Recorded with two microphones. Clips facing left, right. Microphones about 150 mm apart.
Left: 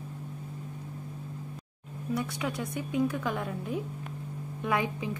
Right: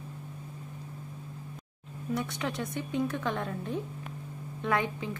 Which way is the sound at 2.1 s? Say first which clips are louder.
Left 1 dB; 5° left (ahead or behind).